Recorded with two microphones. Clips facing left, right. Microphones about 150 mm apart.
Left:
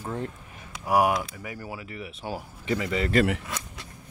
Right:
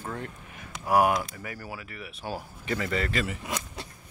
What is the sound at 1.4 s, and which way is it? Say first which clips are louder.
Speech: left 2 dB; 20° left (ahead or behind).